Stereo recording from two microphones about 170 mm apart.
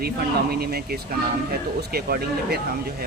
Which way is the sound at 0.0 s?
65° right (ahead or behind).